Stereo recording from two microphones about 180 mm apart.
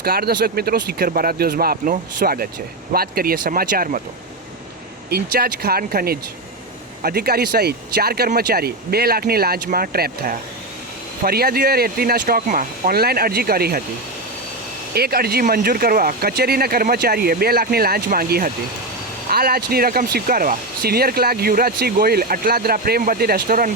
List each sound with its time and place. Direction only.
0.0 s speech: 55° right (ahead or behind)
5.0 s speech: 60° right (ahead or behind)
14.9 s speech: 60° right (ahead or behind)